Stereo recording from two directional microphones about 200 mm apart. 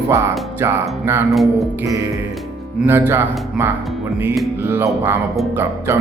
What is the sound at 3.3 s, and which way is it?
Speech, centre (ahead or behind).